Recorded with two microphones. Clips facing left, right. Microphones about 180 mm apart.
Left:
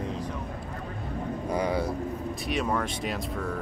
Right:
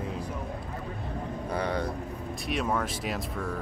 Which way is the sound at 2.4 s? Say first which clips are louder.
Even; centre (ahead or behind).